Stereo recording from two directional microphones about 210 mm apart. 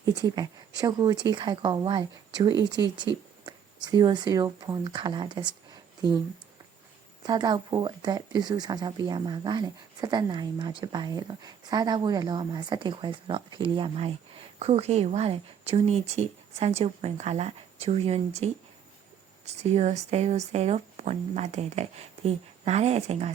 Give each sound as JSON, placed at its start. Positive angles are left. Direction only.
{"t": 0.0, "sound": "speech", "side_deg": -20}
{"t": 7.2, "sound": "speech", "side_deg": -20}